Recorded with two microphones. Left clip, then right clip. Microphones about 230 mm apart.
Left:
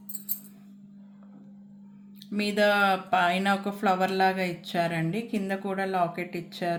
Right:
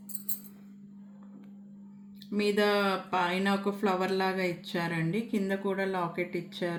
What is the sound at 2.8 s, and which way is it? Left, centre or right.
Speech, left.